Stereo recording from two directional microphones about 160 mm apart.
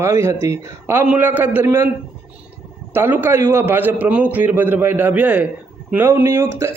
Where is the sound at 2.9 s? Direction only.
15° right (ahead or behind).